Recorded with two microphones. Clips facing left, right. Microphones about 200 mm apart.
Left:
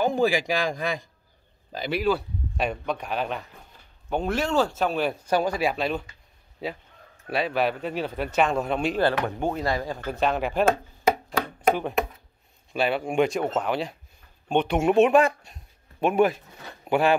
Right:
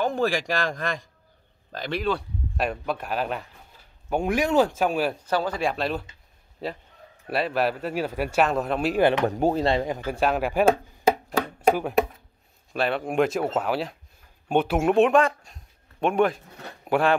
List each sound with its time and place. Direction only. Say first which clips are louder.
0.0 s speech: left 2 dB; centre (ahead or behind)
5.2 s speech: left 2 dB; 10° left (ahead or behind); by 9.0 s 5° right (ahead or behind)
9.2 s speech: right 5 dB; 40° right (ahead or behind); by 17.1 s centre (ahead or behind)